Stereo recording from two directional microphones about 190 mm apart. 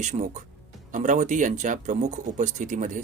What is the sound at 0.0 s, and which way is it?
Speech, 40° right (ahead or behind).